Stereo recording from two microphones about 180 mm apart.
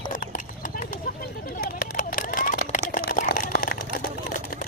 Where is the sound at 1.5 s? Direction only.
50° left (ahead or behind).